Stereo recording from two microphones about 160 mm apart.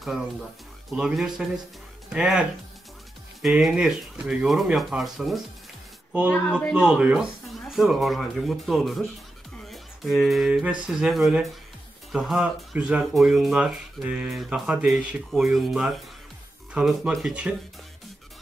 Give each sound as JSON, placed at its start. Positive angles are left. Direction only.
{"t": 0.0, "sound": "speech", "side_deg": 0}
{"t": 3.4, "sound": "speech", "side_deg": -5}
{"t": 6.7, "sound": "speech", "side_deg": -5}